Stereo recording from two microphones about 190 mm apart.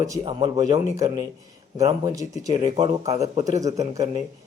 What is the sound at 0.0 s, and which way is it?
Speech, 20° right (ahead or behind).